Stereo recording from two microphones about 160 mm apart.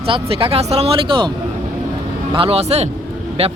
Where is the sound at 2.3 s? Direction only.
35° right (ahead or behind).